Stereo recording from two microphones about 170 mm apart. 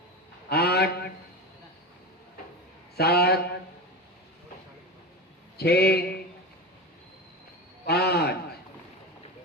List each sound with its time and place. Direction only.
0.5 s honk: 70° left (ahead or behind)
2.9 s a man's voice: 70° left (ahead or behind)
5.5 s a man's voice: 70° left (ahead or behind)
7.9 s a sound: 70° left (ahead or behind)